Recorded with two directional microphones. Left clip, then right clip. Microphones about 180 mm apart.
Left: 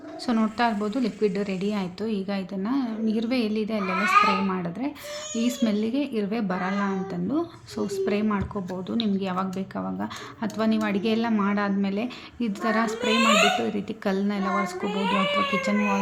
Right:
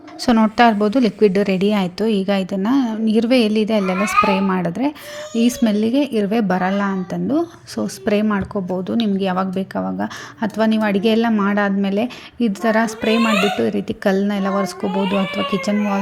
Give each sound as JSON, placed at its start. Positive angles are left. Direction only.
{"t": 0.3, "sound": "a woman's voice", "side_deg": -35}